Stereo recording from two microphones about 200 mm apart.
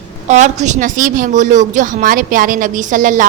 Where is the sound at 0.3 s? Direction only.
35° right (ahead or behind).